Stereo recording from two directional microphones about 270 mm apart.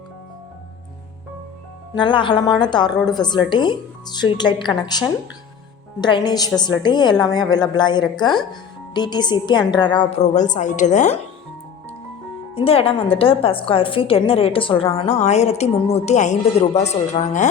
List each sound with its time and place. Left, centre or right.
2.0 s a woman's voice: centre
12.5 s a woman's voice: left